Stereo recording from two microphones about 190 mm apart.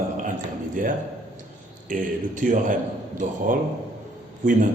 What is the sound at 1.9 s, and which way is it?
A man's voice, 45° right (ahead or behind).